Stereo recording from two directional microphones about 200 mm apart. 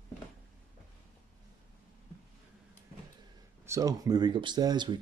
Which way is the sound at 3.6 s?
15° right (ahead or behind).